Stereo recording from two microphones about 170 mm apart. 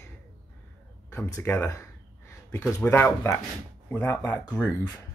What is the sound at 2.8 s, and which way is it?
Speech, 15° left (ahead or behind).